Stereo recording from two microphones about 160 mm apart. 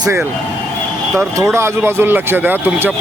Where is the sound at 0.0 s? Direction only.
15° right (ahead or behind).